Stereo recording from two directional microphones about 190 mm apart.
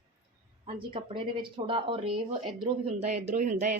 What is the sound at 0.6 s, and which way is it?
Speech, 30° right (ahead or behind).